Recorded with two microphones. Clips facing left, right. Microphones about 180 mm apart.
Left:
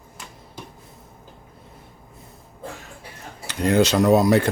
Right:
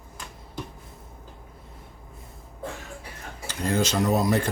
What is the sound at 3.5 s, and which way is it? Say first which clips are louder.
Speech: left 7 dB; 70° left (ahead or behind).